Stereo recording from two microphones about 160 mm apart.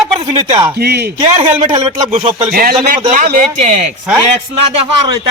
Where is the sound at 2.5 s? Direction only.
65° right (ahead or behind).